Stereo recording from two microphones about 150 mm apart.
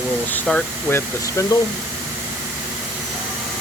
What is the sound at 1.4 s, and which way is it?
Speech, 20° left (ahead or behind).